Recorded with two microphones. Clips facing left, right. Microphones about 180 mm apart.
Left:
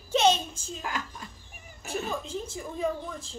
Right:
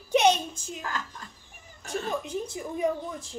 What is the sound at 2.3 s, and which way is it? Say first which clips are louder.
Speech: right 3 dB; 15° right (ahead or behind).